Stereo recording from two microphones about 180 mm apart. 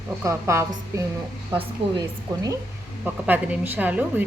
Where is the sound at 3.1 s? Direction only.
10° right (ahead or behind).